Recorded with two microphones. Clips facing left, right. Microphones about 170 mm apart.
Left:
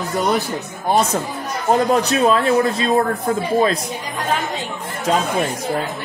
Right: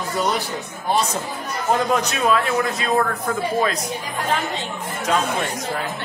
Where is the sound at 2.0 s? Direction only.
35° left (ahead or behind).